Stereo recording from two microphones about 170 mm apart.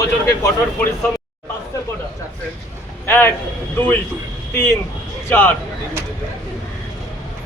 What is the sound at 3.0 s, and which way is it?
Speech, 15° left (ahead or behind).